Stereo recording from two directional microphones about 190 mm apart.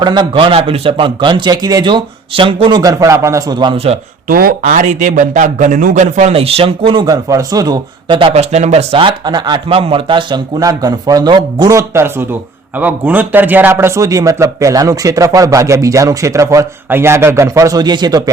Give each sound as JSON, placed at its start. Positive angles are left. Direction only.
{"t": 0.0, "sound": "a man's voice", "side_deg": -25}
{"t": 4.3, "sound": "a man's voice", "side_deg": -50}